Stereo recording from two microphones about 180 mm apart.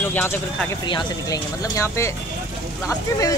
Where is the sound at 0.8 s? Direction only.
25° left (ahead or behind).